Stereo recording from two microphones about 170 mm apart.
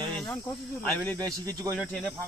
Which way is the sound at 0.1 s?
Centre (ahead or behind).